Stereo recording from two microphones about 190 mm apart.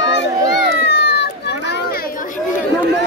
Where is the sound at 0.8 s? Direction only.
60° left (ahead or behind).